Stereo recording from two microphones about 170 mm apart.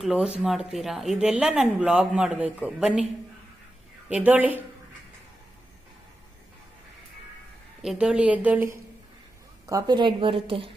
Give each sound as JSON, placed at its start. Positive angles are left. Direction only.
{"t": 0.0, "sound": "speech", "side_deg": 0}
{"t": 4.1, "sound": "a woman's voice", "side_deg": -10}
{"t": 7.8, "sound": "a woman's voice", "side_deg": -5}